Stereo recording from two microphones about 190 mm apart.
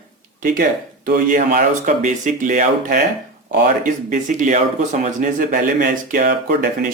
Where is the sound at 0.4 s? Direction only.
50° right (ahead or behind).